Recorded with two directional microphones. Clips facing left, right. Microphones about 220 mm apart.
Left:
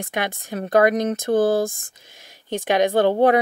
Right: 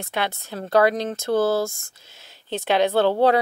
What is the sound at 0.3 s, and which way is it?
Speech, 15° left (ahead or behind).